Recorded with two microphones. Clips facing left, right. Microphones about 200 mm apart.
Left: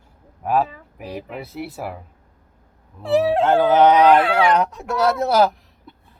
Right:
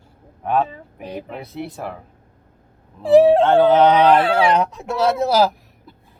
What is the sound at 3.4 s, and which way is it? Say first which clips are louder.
Speech: right 2 dB; 5° left (ahead or behind).